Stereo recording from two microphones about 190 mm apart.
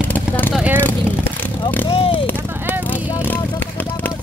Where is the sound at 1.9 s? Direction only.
30° left (ahead or behind).